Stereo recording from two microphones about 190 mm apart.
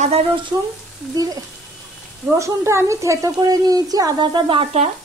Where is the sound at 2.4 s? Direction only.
15° right (ahead or behind); by 4.9 s 30° right (ahead or behind).